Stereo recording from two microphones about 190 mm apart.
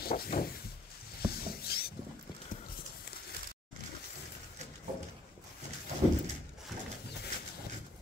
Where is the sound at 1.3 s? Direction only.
55° left (ahead or behind).